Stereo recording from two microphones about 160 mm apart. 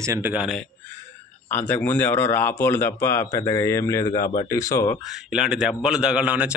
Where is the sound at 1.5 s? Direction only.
10° left (ahead or behind).